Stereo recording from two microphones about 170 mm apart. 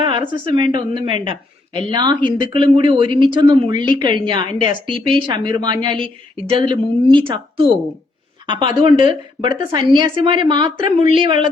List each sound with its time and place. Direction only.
0.3 s speech: 30° right (ahead or behind)